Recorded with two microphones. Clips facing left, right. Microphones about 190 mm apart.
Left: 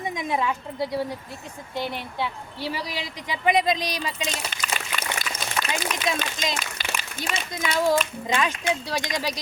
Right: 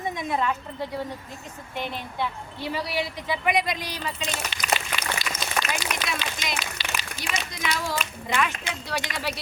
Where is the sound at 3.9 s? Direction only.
15° left (ahead or behind).